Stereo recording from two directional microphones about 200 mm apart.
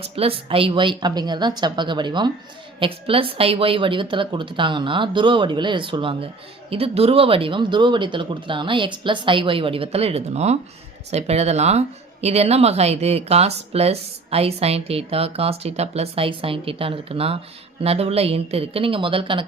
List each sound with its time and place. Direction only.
0.0 s speech: 30° right (ahead or behind)